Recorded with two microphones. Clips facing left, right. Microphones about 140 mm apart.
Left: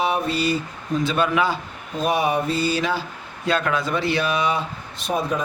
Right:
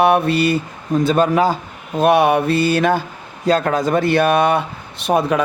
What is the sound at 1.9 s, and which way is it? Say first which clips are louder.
Speech: right 8 dB; 65° right (ahead or behind).